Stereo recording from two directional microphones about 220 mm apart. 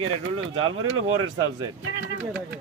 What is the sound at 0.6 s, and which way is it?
Speech, 70° right (ahead or behind).